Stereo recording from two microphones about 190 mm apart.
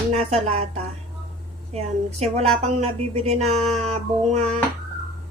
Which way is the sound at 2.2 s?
35° right (ahead or behind).